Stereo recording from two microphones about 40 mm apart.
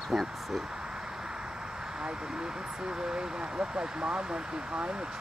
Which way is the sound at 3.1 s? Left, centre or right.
Right.